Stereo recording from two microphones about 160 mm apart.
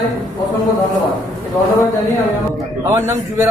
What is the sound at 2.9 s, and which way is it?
Speech, 15° right (ahead or behind).